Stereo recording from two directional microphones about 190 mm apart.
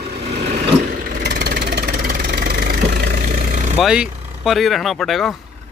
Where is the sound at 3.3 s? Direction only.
40° right (ahead or behind).